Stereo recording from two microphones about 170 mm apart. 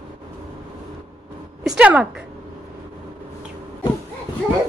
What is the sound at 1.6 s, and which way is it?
Speech, 5° right (ahead or behind).